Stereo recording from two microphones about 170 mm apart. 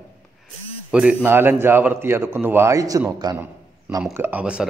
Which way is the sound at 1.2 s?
10° right (ahead or behind).